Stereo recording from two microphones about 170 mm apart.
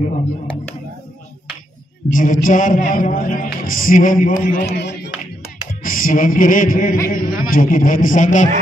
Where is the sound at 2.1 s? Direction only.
50° left (ahead or behind); by 4.9 s 70° left (ahead or behind).